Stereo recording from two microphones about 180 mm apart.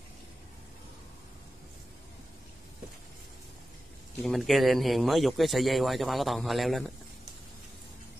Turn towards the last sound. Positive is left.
turn(degrees=0)  # may be behind; listen again after turning